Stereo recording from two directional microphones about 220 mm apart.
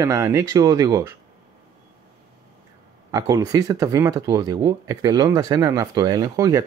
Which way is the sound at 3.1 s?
15° right (ahead or behind).